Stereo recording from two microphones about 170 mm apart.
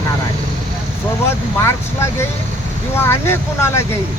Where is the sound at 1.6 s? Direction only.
15° left (ahead or behind).